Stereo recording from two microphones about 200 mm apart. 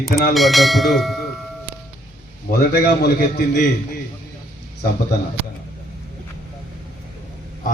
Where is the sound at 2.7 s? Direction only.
55° left (ahead or behind).